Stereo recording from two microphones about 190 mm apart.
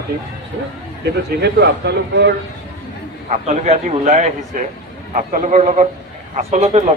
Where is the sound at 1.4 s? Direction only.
60° right (ahead or behind).